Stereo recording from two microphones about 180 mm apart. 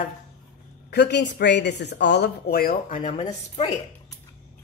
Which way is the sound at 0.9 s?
70° left (ahead or behind).